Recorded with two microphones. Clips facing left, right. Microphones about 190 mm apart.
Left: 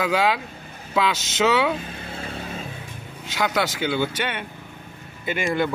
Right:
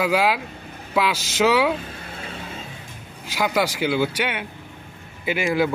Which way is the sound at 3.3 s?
10° right (ahead or behind).